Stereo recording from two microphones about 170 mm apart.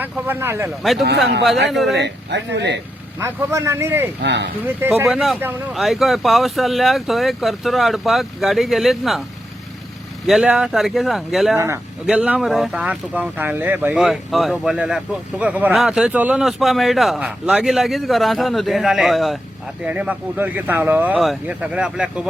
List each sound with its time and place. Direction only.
0.0 s speech: 15° right (ahead or behind)
0.8 s speech: centre (ahead or behind)
1.9 s speech: 90° right
3.2 s speech: 15° right (ahead or behind)
4.2 s speech: 90° right
4.8 s speech: 10° right (ahead or behind)
5.0 s speech: centre (ahead or behind)
10.2 s speech: 5° right (ahead or behind)
11.5 s speech: 15° right (ahead or behind)
12.0 s speech: 5° right (ahead or behind)